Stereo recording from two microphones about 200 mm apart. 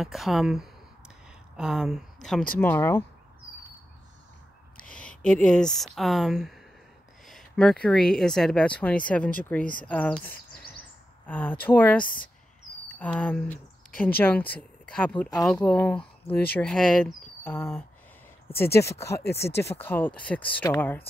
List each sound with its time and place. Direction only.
0.0 s a sound: centre (ahead or behind)
1.6 s speech: centre (ahead or behind)
2.6 s speech: 10° left (ahead or behind)
4.9 s speech: 5° left (ahead or behind)
10.3 s bird vocalization: 45° left (ahead or behind)
11.2 s speech: 10° left (ahead or behind)